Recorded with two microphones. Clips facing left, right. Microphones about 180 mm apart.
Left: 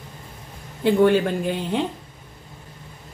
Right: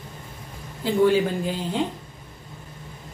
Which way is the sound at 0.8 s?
65° left (ahead or behind).